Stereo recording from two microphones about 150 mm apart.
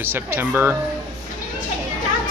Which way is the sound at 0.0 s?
15° right (ahead or behind).